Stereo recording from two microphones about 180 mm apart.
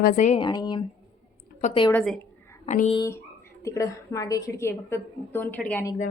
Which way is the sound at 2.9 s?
20° left (ahead or behind).